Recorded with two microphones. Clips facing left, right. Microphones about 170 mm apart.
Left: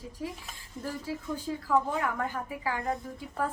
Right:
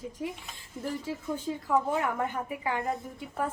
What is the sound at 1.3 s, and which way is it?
A woman's voice, 20° right (ahead or behind).